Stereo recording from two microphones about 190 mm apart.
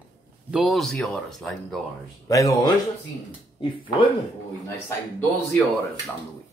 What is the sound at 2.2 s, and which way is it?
Speech, 15° left (ahead or behind).